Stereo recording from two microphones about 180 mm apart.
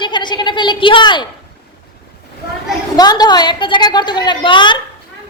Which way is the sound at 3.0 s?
20° left (ahead or behind).